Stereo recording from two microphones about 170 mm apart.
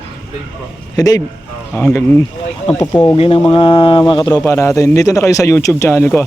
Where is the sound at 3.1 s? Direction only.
35° left (ahead or behind); by 6.2 s 15° left (ahead or behind).